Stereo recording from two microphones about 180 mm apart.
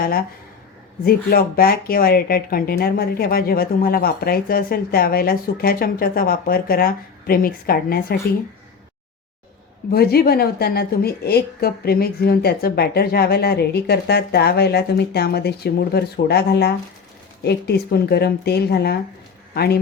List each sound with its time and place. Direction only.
1.0 s speech: 55° left (ahead or behind)
9.9 s speech: 60° left (ahead or behind)